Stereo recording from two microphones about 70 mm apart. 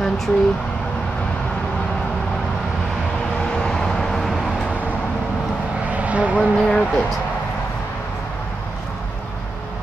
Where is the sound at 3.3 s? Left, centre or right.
Centre.